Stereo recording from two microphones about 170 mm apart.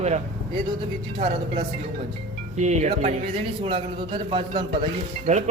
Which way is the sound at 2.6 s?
45° right (ahead or behind).